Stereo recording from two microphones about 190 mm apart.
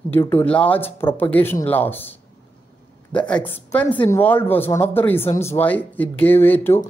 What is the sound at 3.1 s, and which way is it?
A woman's voice, 5° left (ahead or behind).